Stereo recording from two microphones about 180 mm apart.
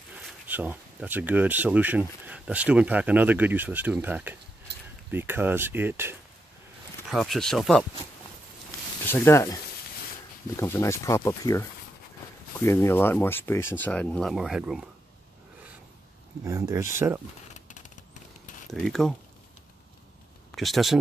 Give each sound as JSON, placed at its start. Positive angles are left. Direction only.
{"t": 0.1, "sound": "speech", "side_deg": -10}
{"t": 7.1, "sound": "speech", "side_deg": 0}
{"t": 9.0, "sound": "speech", "side_deg": 15}
{"t": 12.6, "sound": "speech", "side_deg": 15}
{"t": 16.4, "sound": "speech", "side_deg": -20}
{"t": 17.6, "sound": "a sound", "side_deg": 45}
{"t": 18.7, "sound": "speech", "side_deg": 0}
{"t": 20.5, "sound": "speech", "side_deg": 0}